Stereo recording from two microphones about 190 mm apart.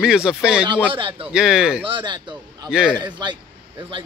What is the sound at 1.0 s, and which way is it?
Speech, 25° right (ahead or behind).